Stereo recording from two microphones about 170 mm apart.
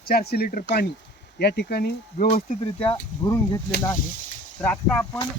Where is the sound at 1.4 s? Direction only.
75° left (ahead or behind).